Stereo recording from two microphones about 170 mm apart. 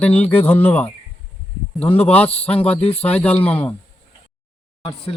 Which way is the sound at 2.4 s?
35° left (ahead or behind).